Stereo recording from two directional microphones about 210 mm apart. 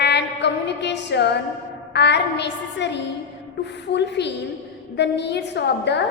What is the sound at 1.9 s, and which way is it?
A woman's voice, 55° left (ahead or behind).